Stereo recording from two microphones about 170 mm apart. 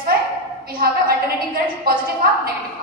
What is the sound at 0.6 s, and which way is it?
A woman's voice, 60° right (ahead or behind).